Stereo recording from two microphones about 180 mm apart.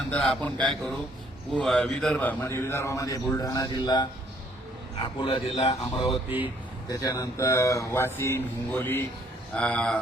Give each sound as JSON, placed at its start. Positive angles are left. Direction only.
{"t": 0.1, "sound": "a man's voice", "side_deg": 5}
{"t": 6.9, "sound": "a man's voice", "side_deg": 20}